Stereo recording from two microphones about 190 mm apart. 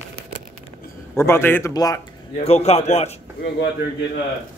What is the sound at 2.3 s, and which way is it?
Speech, 35° left (ahead or behind).